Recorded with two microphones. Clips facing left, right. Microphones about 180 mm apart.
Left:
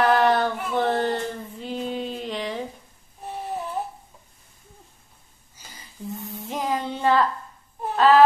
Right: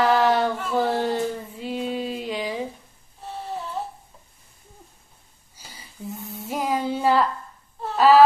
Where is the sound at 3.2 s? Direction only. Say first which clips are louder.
Left 1 dB; 15° left (ahead or behind).